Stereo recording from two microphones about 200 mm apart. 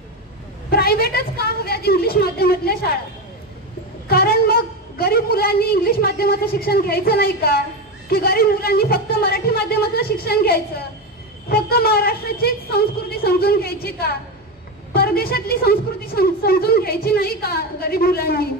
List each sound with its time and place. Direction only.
0.7 s a woman's voice: 50° left (ahead or behind)
4.1 s a woman's voice: 50° left (ahead or behind)